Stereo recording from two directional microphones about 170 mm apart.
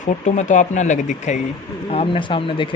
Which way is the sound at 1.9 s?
35° left (ahead or behind).